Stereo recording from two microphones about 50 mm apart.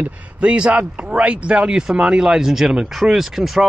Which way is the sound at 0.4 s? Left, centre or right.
Right.